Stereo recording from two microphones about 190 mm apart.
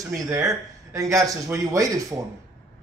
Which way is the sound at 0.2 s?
15° right (ahead or behind).